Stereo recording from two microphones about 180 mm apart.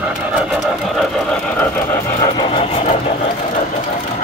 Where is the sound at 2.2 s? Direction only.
25° left (ahead or behind).